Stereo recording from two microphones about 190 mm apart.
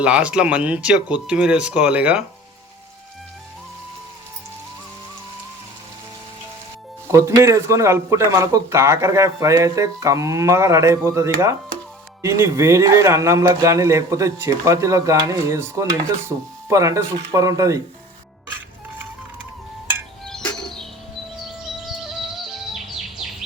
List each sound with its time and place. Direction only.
0.0 s speech: 5° right (ahead or behind)
7.1 s speech: 15° right (ahead or behind)
20.2 s music: 5° left (ahead or behind)
21.8 s music: centre (ahead or behind)